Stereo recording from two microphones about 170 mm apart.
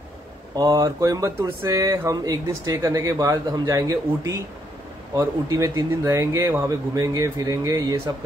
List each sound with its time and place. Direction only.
0.6 s speech: 20° right (ahead or behind)